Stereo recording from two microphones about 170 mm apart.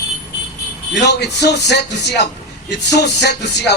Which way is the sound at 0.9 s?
85° left.